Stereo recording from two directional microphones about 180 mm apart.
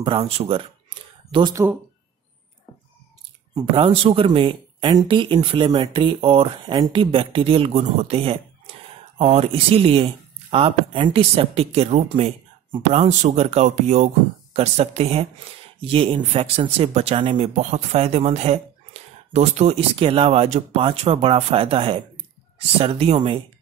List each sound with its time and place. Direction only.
0.0 s speech: 30° right (ahead or behind)
3.5 s speech: 30° right (ahead or behind)